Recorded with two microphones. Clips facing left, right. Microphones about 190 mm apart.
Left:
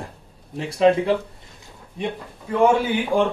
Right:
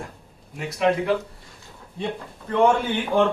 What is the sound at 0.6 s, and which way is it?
Speech, 30° left (ahead or behind).